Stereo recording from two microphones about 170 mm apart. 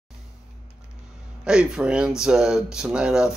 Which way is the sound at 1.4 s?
5° right (ahead or behind).